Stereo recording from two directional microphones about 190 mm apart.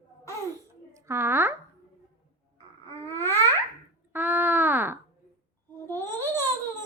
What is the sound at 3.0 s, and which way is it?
Babbling, 10° left (ahead or behind).